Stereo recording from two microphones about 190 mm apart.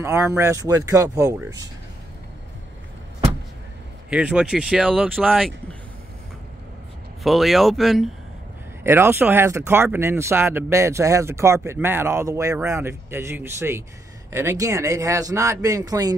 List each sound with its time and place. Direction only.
0.0 s speech: 15° right (ahead or behind)
4.1 s speech: 5° right (ahead or behind)
7.2 s speech: centre (ahead or behind)
8.8 s speech: 10° right (ahead or behind)